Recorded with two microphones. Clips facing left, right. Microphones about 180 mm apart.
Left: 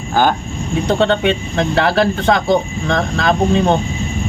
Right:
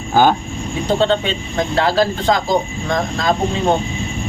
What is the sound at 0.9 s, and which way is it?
Speech, 70° left (ahead or behind).